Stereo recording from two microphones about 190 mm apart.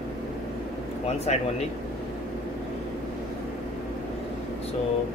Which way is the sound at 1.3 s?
35° left (ahead or behind).